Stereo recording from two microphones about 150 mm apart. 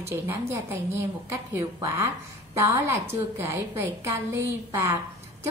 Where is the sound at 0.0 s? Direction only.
15° right (ahead or behind).